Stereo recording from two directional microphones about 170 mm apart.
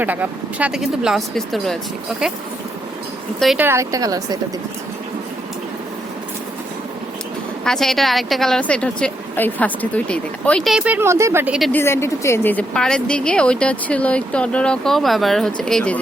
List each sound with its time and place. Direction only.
0.0 s a woman's voice: 10° right (ahead or behind)
3.4 s a woman's voice: centre (ahead or behind)
3.7 s a woman's voice: 20° right (ahead or behind)
7.6 s a woman's voice: centre (ahead or behind)
11.7 s a woman's voice: 15° left (ahead or behind)